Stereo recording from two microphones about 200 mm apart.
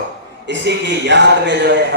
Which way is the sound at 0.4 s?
60° right (ahead or behind).